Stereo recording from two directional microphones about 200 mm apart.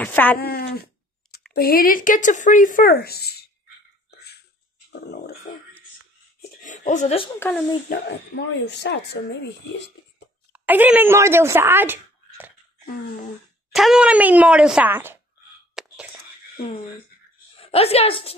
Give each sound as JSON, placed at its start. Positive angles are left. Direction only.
{"t": 0.0, "sound": "speech", "side_deg": 10}
{"t": 0.4, "sound": "speech", "side_deg": 50}
{"t": 4.1, "sound": "a sound", "side_deg": 55}
{"t": 6.6, "sound": "speech", "side_deg": 40}
{"t": 7.3, "sound": "speech", "side_deg": 10}
{"t": 7.9, "sound": "speech", "side_deg": 60}
{"t": 10.5, "sound": "speech", "side_deg": -10}
{"t": 13.7, "sound": "speech", "side_deg": 0}
{"t": 15.7, "sound": "a sound", "side_deg": -5}
{"t": 17.6, "sound": "a woman's voice", "side_deg": 30}